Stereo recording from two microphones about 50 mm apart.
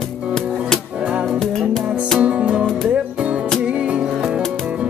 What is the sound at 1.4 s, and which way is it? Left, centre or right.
Music, centre.